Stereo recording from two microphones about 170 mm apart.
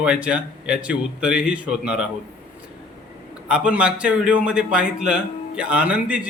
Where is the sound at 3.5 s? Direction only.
5° right (ahead or behind).